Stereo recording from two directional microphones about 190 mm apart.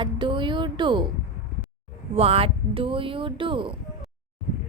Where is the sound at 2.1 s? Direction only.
30° right (ahead or behind).